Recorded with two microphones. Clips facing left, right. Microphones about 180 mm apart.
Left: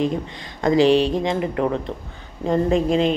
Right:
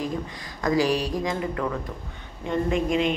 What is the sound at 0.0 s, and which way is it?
Speech, 25° left (ahead or behind).